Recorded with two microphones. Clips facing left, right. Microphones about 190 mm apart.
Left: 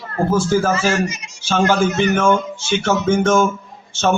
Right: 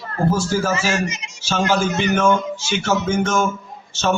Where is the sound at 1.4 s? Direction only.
55° left (ahead or behind).